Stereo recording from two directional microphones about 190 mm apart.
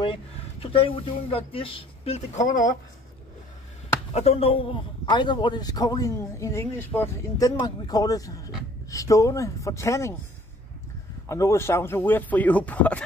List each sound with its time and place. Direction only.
0.0 s speech: 25° left (ahead or behind); by 2.7 s 45° left (ahead or behind)
4.1 s a man's voice: 35° left (ahead or behind); by 10.1 s 15° left (ahead or behind)
11.2 s speech: 15° left (ahead or behind)